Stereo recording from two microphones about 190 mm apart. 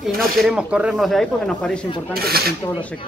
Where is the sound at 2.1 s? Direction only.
55° right (ahead or behind).